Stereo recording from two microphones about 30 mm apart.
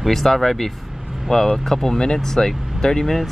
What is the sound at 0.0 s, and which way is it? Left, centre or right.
Speech, centre.